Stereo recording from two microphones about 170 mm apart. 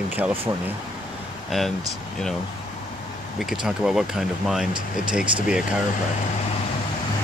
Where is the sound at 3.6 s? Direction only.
5° right (ahead or behind).